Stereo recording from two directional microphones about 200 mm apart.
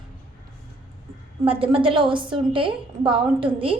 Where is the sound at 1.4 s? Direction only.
25° right (ahead or behind).